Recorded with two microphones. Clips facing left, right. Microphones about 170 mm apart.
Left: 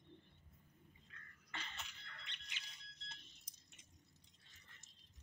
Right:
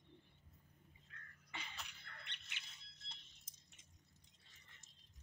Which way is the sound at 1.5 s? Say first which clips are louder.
Left 1 dB; 10° right (ahead or behind).